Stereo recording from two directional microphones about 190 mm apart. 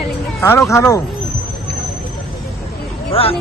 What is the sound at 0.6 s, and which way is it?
Speech, 15° left (ahead or behind).